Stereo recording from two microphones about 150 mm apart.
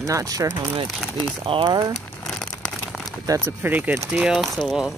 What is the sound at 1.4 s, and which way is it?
Speech, 35° right (ahead or behind).